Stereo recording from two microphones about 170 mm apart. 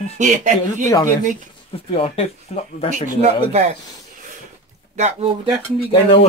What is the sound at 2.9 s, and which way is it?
Speech, 50° right (ahead or behind).